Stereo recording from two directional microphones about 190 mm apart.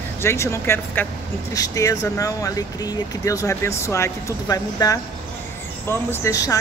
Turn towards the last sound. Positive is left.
turn(degrees=15)  # may be behind; listen again after turning